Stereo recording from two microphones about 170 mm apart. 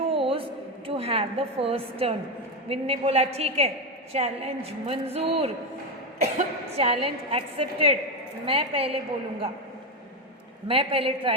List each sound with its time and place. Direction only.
0.1 s a sound: 30° right (ahead or behind)
0.9 s a woman's voice: 35° right (ahead or behind)
10.7 s a woman's voice: 35° right (ahead or behind)